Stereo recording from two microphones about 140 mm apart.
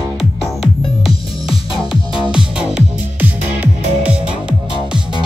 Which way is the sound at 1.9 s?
5° right (ahead or behind).